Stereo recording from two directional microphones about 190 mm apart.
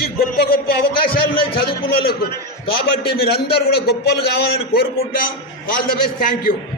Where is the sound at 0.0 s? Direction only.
55° left (ahead or behind).